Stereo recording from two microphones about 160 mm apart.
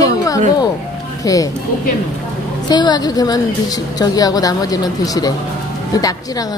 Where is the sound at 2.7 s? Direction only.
25° left (ahead or behind).